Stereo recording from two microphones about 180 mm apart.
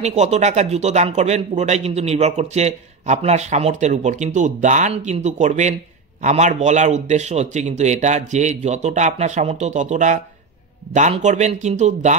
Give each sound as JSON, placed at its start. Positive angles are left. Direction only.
{"t": 0.0, "sound": "speech", "side_deg": -40}